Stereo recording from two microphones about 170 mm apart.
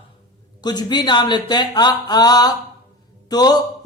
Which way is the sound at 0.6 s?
25° left (ahead or behind).